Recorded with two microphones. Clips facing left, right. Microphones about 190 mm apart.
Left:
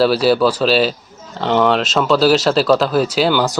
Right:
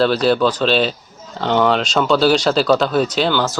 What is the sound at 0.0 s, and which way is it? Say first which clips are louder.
Speech: left 2 dB; 5° left (ahead or behind).